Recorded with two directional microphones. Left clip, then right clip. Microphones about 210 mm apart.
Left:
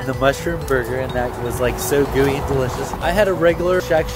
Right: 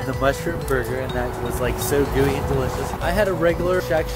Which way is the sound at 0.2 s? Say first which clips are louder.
Left 4 dB; 25° left (ahead or behind).